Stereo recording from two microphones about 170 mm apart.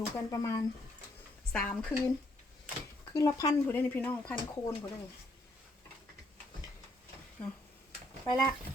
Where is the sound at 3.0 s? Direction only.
20° left (ahead or behind).